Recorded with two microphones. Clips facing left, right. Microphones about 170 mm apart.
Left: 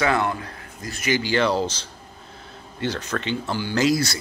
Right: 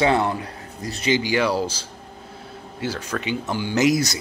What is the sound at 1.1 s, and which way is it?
Speech, 15° right (ahead or behind).